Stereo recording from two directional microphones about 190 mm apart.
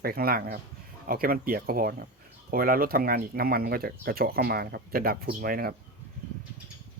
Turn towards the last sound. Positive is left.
turn(degrees=-50)  # may be behind; listen again after turning